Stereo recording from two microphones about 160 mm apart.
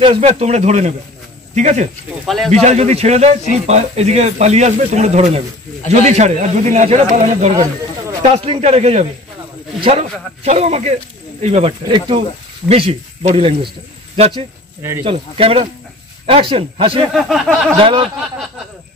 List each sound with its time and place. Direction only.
0.0 s speech: 35° right (ahead or behind)
2.2 s a sound: centre (ahead or behind)
2.6 s speech: 45° right (ahead or behind)
10.4 s speech: 45° right (ahead or behind)
11.8 s speech: 30° right (ahead or behind)
14.8 s speech: 15° right (ahead or behind)
15.0 s speech: 35° right (ahead or behind)
17.1 s a sound: centre (ahead or behind)
17.7 s speech: 35° right (ahead or behind)